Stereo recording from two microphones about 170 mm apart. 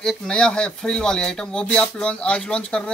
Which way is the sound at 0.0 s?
5° left (ahead or behind).